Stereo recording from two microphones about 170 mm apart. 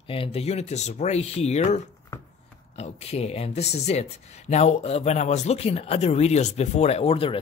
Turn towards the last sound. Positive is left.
turn(degrees=35)  # may be behind; listen again after turning